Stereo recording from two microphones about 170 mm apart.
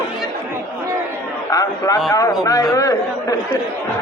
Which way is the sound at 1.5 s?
20° left (ahead or behind).